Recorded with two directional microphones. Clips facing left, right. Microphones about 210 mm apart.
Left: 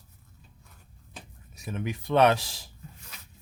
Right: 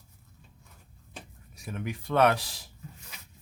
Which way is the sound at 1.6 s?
20° left (ahead or behind).